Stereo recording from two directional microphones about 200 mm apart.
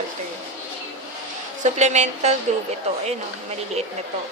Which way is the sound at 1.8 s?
35° right (ahead or behind).